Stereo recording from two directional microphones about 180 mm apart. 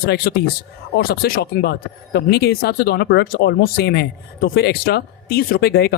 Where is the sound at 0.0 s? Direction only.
65° left (ahead or behind).